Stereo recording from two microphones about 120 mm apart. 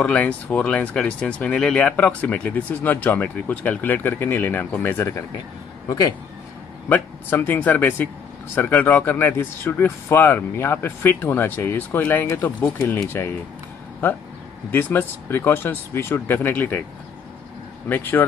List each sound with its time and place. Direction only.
0.0 s speech: 10° left (ahead or behind)
6.9 s speech: 15° left (ahead or behind)
14.7 s speech: 15° left (ahead or behind)
17.8 s speech: 15° left (ahead or behind)